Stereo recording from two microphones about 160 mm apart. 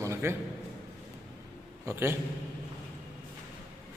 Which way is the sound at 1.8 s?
15° right (ahead or behind).